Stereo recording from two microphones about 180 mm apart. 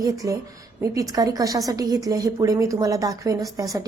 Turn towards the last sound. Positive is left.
turn(degrees=-20)  # may be behind; listen again after turning